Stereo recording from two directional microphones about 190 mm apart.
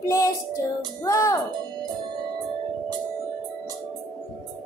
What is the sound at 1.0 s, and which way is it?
Speech, 15° left (ahead or behind).